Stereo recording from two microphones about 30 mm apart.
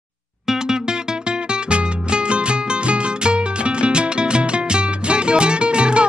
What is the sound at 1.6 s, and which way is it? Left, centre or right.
Music, right.